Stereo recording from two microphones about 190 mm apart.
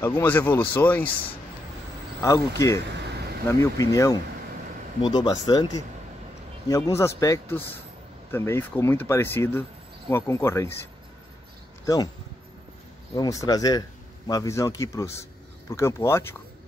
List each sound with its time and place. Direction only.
0.0 s speech: 15° left (ahead or behind)
2.2 s speech: 15° left (ahead or behind)
6.7 s speech: 15° left (ahead or behind)
11.8 s speech: 20° left (ahead or behind)
13.1 s speech: 20° left (ahead or behind)